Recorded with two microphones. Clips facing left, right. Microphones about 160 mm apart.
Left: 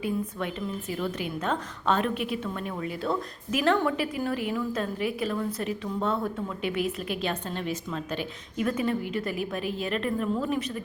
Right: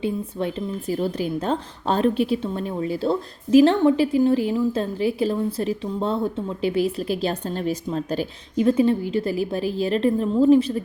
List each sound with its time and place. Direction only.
0.0 s a woman's voice: 30° right (ahead or behind)